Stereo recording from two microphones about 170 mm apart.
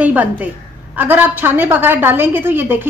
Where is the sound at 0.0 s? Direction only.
10° right (ahead or behind).